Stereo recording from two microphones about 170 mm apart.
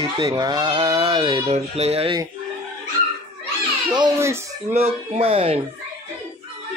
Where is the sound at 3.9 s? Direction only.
20° right (ahead or behind).